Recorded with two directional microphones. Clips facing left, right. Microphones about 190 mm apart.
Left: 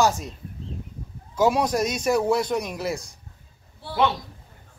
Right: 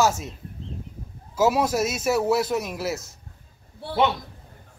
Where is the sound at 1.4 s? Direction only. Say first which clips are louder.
Even; 5° right (ahead or behind).